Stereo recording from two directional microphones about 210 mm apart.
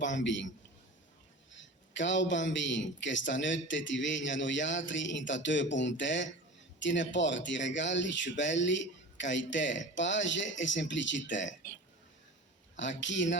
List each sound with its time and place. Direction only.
0.0 s a man's voice: 60° left (ahead or behind)
1.5 s a man's voice: 60° left (ahead or behind)
12.7 s a man's voice: 60° left (ahead or behind)